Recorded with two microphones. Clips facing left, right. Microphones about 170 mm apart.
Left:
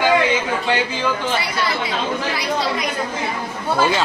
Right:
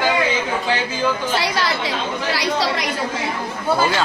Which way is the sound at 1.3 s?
90° right.